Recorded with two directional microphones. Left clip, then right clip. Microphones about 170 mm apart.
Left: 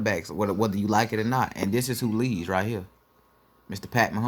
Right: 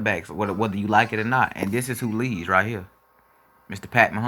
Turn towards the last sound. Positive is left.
turn(degrees=10)  # may be behind; listen again after turning